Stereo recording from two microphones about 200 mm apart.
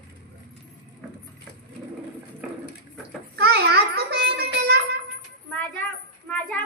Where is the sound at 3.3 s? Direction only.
55° right (ahead or behind).